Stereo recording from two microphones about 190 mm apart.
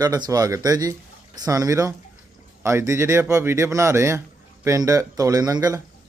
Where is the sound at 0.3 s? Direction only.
20° right (ahead or behind).